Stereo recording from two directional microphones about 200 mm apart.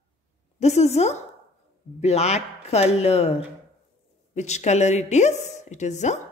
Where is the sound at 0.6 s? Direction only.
35° left (ahead or behind).